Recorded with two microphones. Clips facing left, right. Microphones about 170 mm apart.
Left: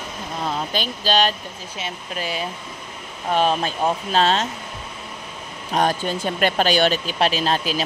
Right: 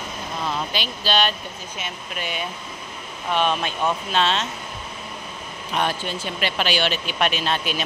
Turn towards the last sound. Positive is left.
turn(degrees=35)  # may be behind; listen again after turning